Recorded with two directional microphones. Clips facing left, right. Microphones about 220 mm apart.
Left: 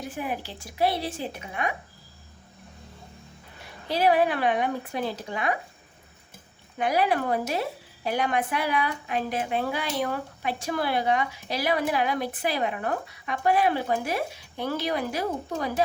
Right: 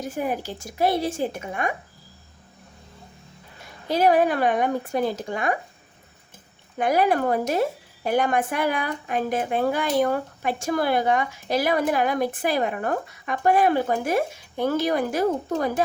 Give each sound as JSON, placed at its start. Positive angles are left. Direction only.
{"t": 0.0, "sound": "a woman's voice", "side_deg": -45}
{"t": 3.8, "sound": "a woman's voice", "side_deg": -45}
{"t": 6.7, "sound": "a woman's voice", "side_deg": -45}